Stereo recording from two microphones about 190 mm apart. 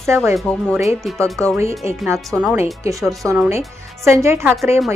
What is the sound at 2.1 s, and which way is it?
Speech, centre (ahead or behind).